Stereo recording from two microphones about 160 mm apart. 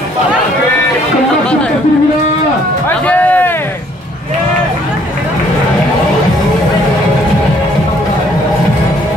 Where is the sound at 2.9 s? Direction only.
10° left (ahead or behind).